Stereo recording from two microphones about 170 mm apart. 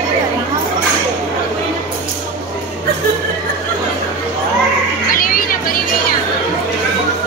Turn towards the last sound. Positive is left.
turn(degrees=55)  # may be behind; listen again after turning